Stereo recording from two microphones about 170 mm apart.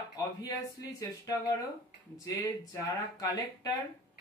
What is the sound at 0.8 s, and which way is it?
Speech, 20° left (ahead or behind).